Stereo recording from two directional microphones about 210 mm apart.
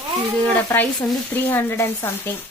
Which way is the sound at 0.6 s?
10° left (ahead or behind).